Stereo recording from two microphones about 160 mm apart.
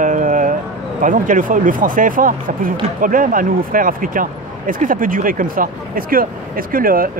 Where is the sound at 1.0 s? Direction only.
55° right (ahead or behind).